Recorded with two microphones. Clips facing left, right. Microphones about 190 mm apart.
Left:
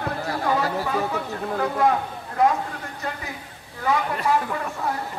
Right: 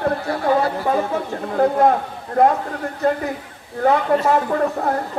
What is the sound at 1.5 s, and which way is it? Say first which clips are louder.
Speech: right 7 dB; 45° right (ahead or behind).